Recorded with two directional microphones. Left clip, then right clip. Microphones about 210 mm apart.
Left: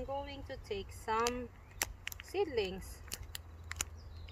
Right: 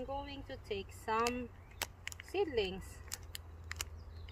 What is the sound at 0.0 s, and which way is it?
A woman's voice, 25° right (ahead or behind).